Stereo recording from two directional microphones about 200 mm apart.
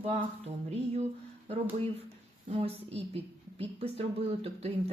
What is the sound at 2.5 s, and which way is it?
A woman's voice, 30° right (ahead or behind).